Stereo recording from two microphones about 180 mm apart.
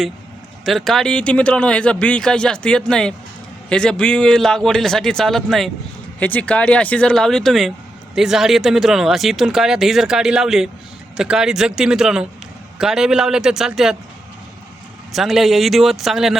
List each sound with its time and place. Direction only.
0.6 s speech: centre (ahead or behind)
15.1 s speech: centre (ahead or behind)